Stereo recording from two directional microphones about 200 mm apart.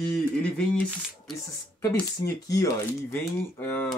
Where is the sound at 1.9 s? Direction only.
15° left (ahead or behind).